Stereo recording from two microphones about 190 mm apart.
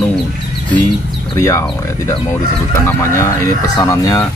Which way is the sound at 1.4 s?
15° left (ahead or behind).